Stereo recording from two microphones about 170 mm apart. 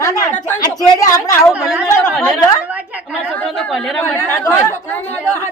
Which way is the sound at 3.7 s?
Centre (ahead or behind).